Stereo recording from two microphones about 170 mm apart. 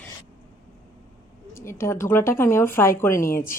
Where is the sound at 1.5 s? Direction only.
15° left (ahead or behind).